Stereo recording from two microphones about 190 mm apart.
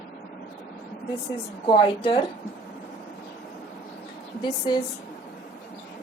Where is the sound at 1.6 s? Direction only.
25° left (ahead or behind).